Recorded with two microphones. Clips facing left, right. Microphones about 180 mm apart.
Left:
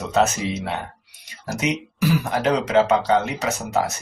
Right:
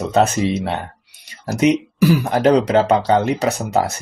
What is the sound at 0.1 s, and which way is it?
Speech, 30° right (ahead or behind).